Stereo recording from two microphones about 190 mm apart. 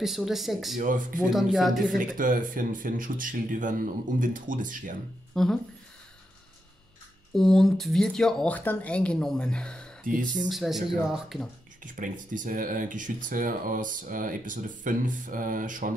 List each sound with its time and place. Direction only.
0.0 s speech: centre (ahead or behind)
0.7 s speech: 45° right (ahead or behind)
1.3 s speech: centre (ahead or behind)
2.0 s speech: 45° right (ahead or behind)
5.3 s speech: centre (ahead or behind)
7.3 s speech: centre (ahead or behind)
11.8 s speech: 45° right (ahead or behind)